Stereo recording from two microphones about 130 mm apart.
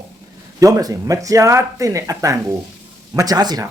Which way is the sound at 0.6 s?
30° right (ahead or behind).